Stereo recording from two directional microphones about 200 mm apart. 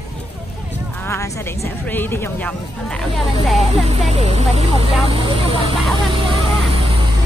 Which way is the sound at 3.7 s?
35° right (ahead or behind).